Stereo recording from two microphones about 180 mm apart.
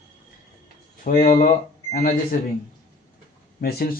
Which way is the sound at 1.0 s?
55° left (ahead or behind).